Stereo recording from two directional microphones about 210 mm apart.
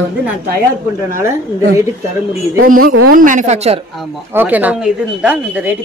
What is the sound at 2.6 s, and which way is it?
Speech, 45° right (ahead or behind).